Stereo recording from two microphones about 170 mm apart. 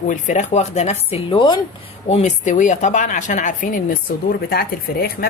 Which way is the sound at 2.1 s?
40° left (ahead or behind).